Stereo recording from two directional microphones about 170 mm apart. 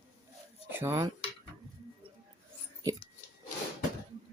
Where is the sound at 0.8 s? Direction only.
15° right (ahead or behind).